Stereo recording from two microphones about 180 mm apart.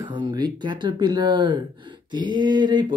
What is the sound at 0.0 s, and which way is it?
Speech, 25° right (ahead or behind).